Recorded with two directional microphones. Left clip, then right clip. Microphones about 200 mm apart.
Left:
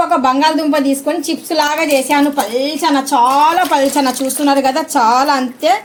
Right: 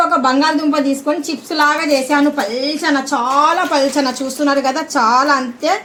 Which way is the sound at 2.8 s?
25° left (ahead or behind).